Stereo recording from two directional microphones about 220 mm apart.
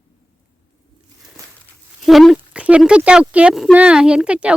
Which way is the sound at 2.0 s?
Centre (ahead or behind).